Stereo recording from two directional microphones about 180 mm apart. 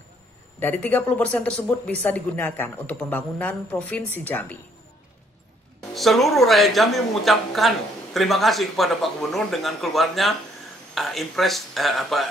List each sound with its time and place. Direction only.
0.6 s speech: 10° left (ahead or behind)
5.9 s speech: centre (ahead or behind)